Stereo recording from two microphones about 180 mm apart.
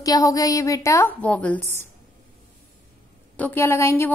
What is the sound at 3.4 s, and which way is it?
Speech, 10° left (ahead or behind).